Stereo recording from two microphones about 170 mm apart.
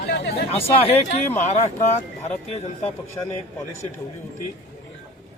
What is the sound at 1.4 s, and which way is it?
Speech, 45° left (ahead or behind).